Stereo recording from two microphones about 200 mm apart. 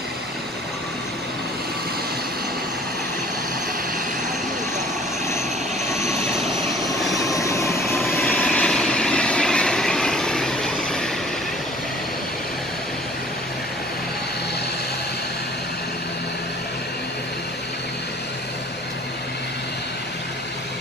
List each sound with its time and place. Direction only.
7.1 s vehicle: 15° left (ahead or behind)
8.0 s vehicle: centre (ahead or behind)